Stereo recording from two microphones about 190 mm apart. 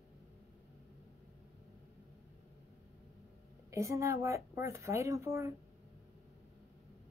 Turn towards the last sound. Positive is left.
turn(degrees=-15)  # may be behind; listen again after turning